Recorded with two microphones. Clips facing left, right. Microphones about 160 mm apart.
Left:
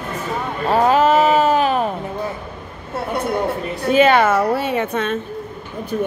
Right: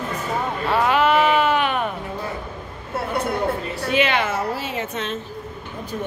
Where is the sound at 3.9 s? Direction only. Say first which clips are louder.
Left 8 dB; 45° left (ahead or behind).